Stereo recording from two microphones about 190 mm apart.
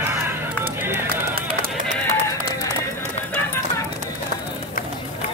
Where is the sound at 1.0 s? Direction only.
50° right (ahead or behind).